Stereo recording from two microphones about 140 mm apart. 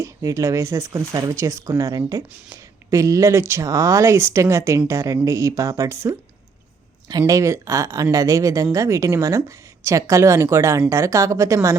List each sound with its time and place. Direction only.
0.0 s speech: 20° right (ahead or behind)